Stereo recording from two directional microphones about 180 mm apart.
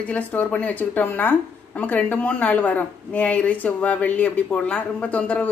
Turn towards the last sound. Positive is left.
turn(degrees=10)  # may be behind; listen again after turning